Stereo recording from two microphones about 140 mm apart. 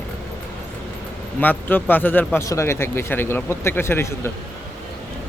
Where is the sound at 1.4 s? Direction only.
15° left (ahead or behind).